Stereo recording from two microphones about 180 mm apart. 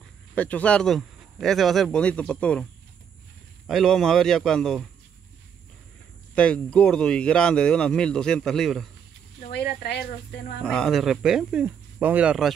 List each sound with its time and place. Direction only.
0.3 s speech: 10° left (ahead or behind)
6.3 s speech: 5° left (ahead or behind)
10.6 s speech: 5° left (ahead or behind)